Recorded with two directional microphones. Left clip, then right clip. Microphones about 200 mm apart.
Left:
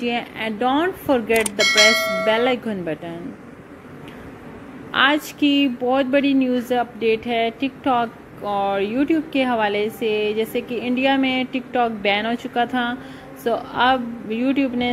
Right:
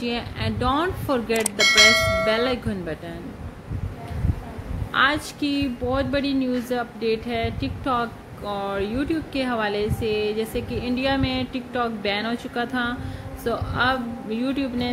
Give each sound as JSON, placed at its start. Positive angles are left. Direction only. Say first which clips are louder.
{"t": 0.0, "sound": "speech", "louder": "left 4 dB", "side_deg": 0}
{"t": 4.9, "sound": "speech", "louder": "left 3 dB", "side_deg": 5}
{"t": 10.0, "sound": "a sound", "louder": "left 3 dB", "side_deg": -35}
{"t": 10.3, "sound": "speech", "louder": "left 4 dB", "side_deg": 0}